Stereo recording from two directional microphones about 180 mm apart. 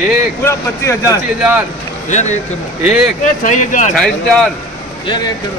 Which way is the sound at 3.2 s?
45° left (ahead or behind).